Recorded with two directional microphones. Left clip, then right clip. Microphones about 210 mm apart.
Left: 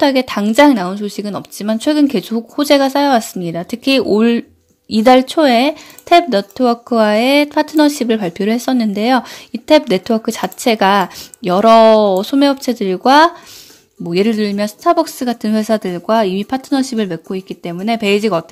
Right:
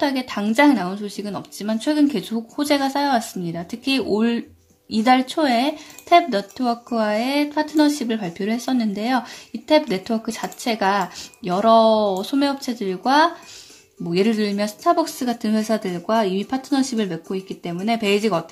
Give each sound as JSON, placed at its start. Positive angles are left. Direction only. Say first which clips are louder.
{"t": 0.0, "sound": "speech", "louder": "left 9 dB", "side_deg": 35}